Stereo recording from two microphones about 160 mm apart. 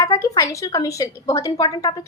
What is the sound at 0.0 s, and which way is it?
A woman's voice, 20° left (ahead or behind).